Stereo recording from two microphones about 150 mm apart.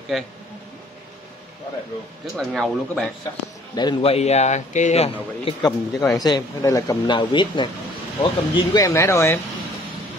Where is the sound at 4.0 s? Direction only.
45° left (ahead or behind).